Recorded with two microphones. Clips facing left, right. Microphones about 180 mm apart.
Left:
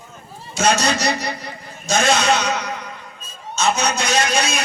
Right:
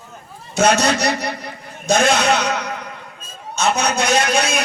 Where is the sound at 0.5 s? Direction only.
60° right (ahead or behind).